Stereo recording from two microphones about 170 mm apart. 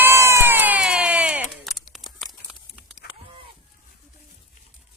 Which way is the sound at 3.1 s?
65° left (ahead or behind).